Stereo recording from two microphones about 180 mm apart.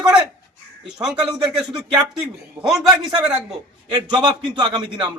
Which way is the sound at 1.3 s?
20° right (ahead or behind).